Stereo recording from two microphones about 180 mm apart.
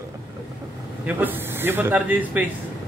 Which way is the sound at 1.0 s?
10° right (ahead or behind).